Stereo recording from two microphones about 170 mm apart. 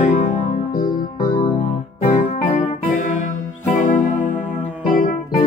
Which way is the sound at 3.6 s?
45° left (ahead or behind).